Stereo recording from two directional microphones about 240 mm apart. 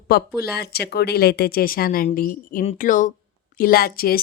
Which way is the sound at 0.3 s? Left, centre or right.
Left.